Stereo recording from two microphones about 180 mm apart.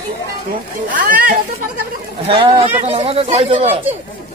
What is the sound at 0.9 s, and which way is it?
Speech, 50° right (ahead or behind).